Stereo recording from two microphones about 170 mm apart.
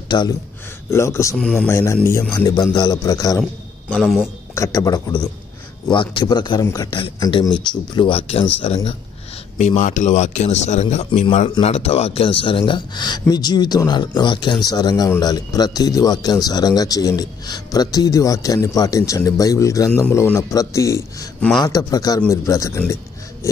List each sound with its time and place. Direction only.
0.1 s speech: 25° left (ahead or behind)
0.8 s a man's voice: 15° left (ahead or behind)
3.9 s a man's voice: centre (ahead or behind)
4.6 s a man's voice: 20° left (ahead or behind); by 11.1 s 45° left (ahead or behind)
11.1 s a man's voice: 30° left (ahead or behind)